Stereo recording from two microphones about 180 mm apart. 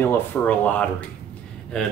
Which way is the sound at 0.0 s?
10° left (ahead or behind).